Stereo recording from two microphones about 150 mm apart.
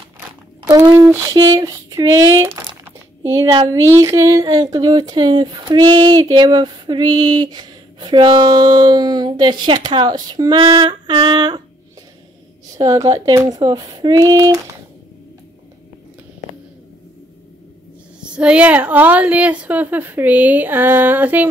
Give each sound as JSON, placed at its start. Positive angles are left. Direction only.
{"t": 0.7, "sound": "speech", "side_deg": -25}
{"t": 12.7, "sound": "speech", "side_deg": -25}
{"t": 18.2, "sound": "a woman's voice", "side_deg": -5}